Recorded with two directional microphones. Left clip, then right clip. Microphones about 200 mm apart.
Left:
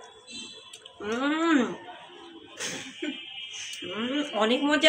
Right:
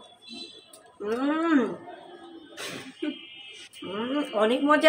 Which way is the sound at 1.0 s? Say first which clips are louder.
Even; 10° right (ahead or behind).